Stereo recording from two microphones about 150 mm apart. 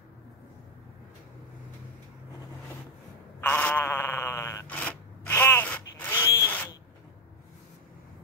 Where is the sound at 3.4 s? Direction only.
10° left (ahead or behind).